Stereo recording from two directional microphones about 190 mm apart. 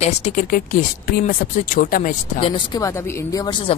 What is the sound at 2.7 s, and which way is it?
Speech, 20° left (ahead or behind).